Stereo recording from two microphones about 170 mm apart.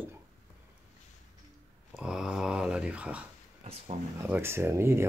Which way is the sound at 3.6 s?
40° right (ahead or behind).